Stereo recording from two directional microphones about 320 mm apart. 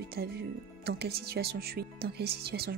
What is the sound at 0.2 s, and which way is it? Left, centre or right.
Speech, right.